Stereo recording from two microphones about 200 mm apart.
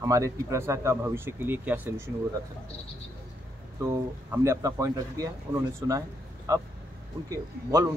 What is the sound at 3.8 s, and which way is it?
Speech, 15° right (ahead or behind).